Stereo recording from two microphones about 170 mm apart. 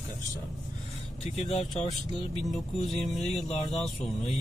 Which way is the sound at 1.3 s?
35° left (ahead or behind).